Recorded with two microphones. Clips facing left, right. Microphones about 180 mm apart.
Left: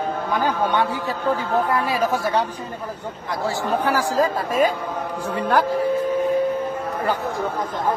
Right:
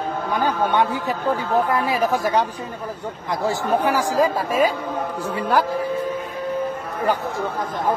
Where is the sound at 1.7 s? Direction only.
15° right (ahead or behind).